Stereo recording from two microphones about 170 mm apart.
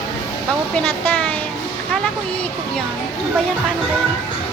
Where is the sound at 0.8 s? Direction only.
5° left (ahead or behind).